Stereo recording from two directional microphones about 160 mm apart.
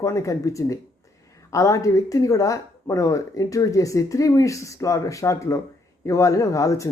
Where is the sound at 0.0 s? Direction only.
20° left (ahead or behind).